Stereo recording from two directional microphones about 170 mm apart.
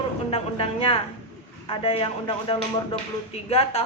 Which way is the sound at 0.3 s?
35° left (ahead or behind).